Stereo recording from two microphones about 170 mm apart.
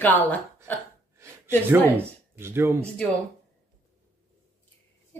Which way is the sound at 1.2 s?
15° right (ahead or behind).